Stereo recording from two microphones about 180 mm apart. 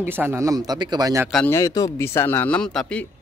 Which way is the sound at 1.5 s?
20° left (ahead or behind).